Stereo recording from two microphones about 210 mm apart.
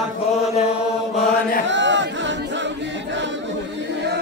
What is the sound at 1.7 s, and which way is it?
Chatter, 60° right (ahead or behind).